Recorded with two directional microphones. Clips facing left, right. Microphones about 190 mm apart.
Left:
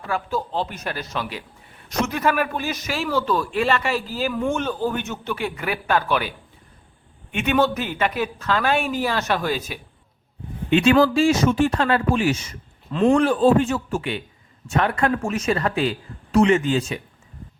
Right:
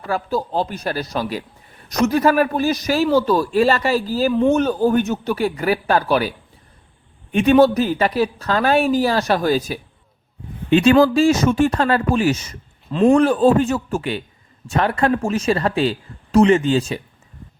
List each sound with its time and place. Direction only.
0.1 s speech: 35° right (ahead or behind)
12.9 s a man's voice: 20° right (ahead or behind)
13.1 s speech: 40° right (ahead or behind)